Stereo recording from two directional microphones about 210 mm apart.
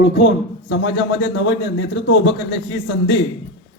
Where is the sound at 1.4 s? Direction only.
55° left (ahead or behind).